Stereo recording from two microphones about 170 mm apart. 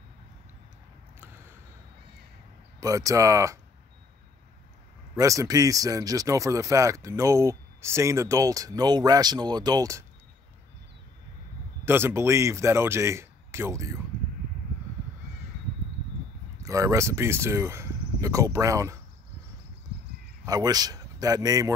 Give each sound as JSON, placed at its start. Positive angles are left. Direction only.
{"t": 2.8, "sound": "speech", "side_deg": -20}
{"t": 5.1, "sound": "speech", "side_deg": -20}
{"t": 11.8, "sound": "speech", "side_deg": -15}
{"t": 16.6, "sound": "speech", "side_deg": -20}
{"t": 20.4, "sound": "speech", "side_deg": -20}